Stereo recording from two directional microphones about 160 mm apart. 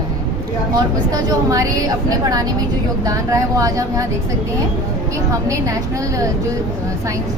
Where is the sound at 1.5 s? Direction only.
20° right (ahead or behind).